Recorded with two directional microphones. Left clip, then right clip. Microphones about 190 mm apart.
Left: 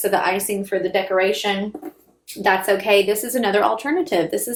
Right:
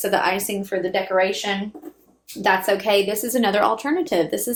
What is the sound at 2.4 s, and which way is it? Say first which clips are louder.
A woman's voice: left 1 dB; 25° right (ahead or behind).